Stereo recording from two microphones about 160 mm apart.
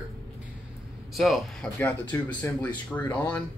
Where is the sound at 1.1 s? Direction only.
Centre (ahead or behind).